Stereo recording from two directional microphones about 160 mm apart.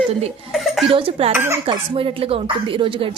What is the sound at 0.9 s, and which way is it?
Speech, 35° right (ahead or behind).